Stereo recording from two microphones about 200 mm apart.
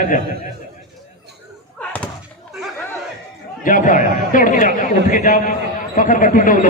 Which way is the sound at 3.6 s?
40° left (ahead or behind).